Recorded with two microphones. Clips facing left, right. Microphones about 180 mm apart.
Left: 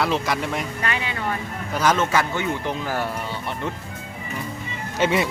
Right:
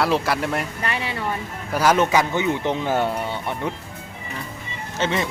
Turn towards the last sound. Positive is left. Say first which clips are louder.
# left 3 dB
turn(degrees=10)  # may be behind; listen again after turning